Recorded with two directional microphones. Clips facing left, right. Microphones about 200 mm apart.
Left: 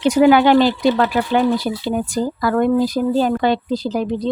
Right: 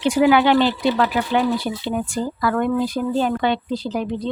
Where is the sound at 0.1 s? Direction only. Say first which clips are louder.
Left 4 dB; 40° left (ahead or behind).